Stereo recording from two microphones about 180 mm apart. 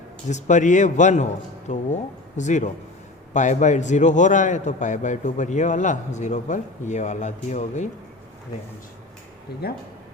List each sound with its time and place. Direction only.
0.3 s a man's voice: 40° left (ahead or behind)
9.5 s speech: 65° left (ahead or behind)